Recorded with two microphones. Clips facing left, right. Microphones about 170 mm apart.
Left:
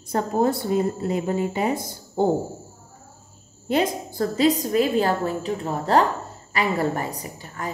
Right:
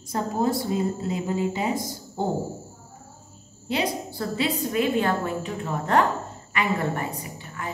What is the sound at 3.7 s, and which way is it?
A woman's voice, 45° left (ahead or behind).